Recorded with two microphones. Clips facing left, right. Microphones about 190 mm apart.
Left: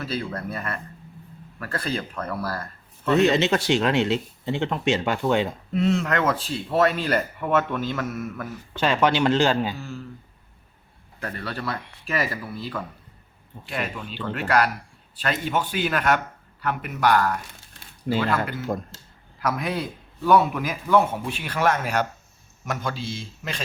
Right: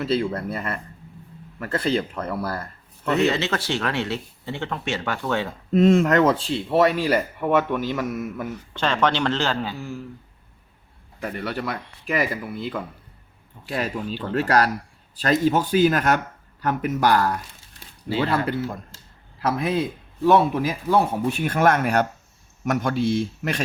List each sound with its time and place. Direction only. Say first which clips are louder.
0.0 s speech: right 6 dB; 25° right (ahead or behind)
3.2 s speech: left 3 dB; 15° left (ahead or behind)
5.7 s speech: right 7 dB; 50° right (ahead or behind); by 6.7 s 25° right (ahead or behind)
6.7 s a man's voice: right 2 dB; 15° right (ahead or behind)
8.8 s a man's voice: left 1 dB; 10° left (ahead or behind)
9.7 s a man's voice: right 3 dB; 15° right (ahead or behind)
11.2 s a man's voice: right 3 dB; 15° right (ahead or behind)
13.7 s speech: right 4 dB; 35° right (ahead or behind)
19.4 s speech: right 4 dB; 30° right (ahead or behind)
21.2 s speech: right 4 dB; 50° right (ahead or behind); by 23.6 s 65° right (ahead or behind)